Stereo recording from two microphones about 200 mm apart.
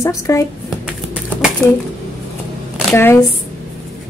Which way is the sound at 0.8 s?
5° right (ahead or behind).